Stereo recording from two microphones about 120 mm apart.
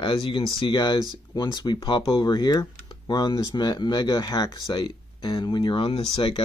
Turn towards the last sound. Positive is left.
turn(degrees=40)  # may be behind; listen again after turning